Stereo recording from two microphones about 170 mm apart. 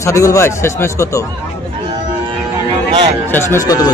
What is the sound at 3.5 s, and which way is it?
Speech, 20° left (ahead or behind).